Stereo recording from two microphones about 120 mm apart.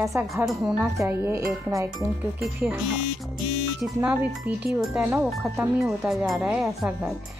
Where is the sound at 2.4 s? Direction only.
10° right (ahead or behind).